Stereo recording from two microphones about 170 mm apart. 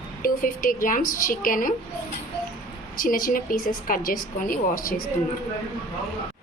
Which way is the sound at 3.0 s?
55° left (ahead or behind).